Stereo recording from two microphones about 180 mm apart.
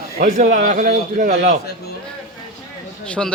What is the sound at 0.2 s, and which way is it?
A man's voice, 45° right (ahead or behind).